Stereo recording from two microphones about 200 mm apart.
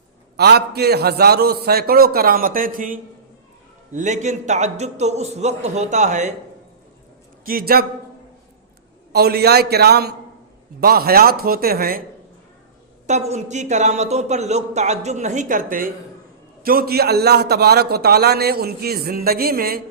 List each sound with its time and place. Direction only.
0.3 s a man's voice: 55° right (ahead or behind); by 6.3 s 35° right (ahead or behind)
7.4 s a man's voice: 45° right (ahead or behind)
9.1 s a man's voice: 50° right (ahead or behind)
13.1 s a man's voice: 35° right (ahead or behind)